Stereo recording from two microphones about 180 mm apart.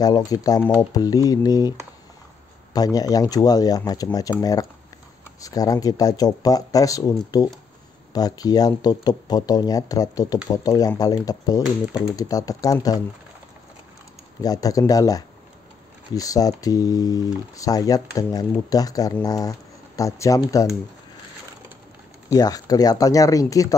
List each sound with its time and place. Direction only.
0.0 s speech: 20° left (ahead or behind)
14.4 s speech: 20° left (ahead or behind)
22.3 s speech: 20° left (ahead or behind)